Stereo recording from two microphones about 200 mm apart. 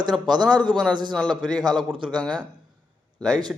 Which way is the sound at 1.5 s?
20° right (ahead or behind).